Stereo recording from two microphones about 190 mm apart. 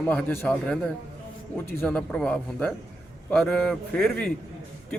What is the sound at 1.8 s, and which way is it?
Speech, 5° left (ahead or behind).